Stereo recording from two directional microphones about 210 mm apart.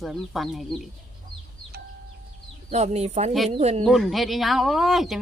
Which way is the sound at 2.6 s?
30° right (ahead or behind).